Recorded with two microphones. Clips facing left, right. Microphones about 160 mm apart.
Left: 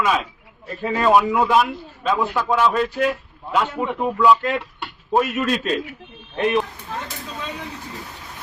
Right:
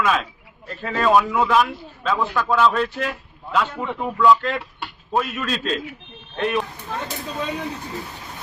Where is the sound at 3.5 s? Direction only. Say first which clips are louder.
Left 2 dB; 15° left (ahead or behind).